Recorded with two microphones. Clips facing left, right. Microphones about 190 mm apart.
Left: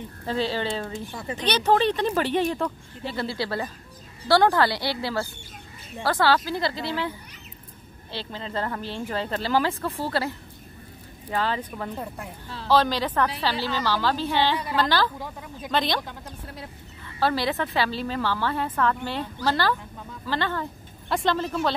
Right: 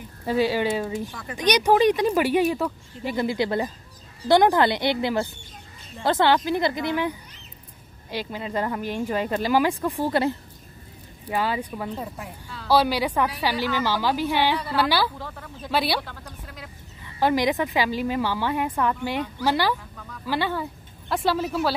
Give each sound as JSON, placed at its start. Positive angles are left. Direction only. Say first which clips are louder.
{"t": 0.2, "sound": "a woman's voice", "louder": "right 4 dB", "side_deg": -10}
{"t": 15.1, "sound": "speech", "louder": "left 1 dB", "side_deg": 15}
{"t": 15.7, "sound": "a woman's voice", "louder": "right 1 dB", "side_deg": -5}
{"t": 16.0, "sound": "speech", "louder": "even", "side_deg": 15}
{"t": 17.2, "sound": "a woman's voice", "louder": "right 3 dB", "side_deg": -15}